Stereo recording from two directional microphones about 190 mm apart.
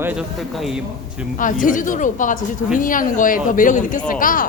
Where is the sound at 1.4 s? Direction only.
45° left (ahead or behind).